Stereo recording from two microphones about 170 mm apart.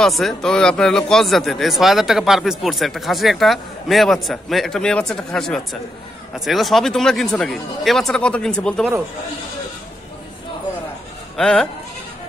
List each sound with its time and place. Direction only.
0.0 s a man's voice: centre (ahead or behind)
11.3 s a man's voice: 5° left (ahead or behind)